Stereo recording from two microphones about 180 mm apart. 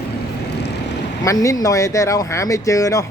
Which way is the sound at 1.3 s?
20° left (ahead or behind).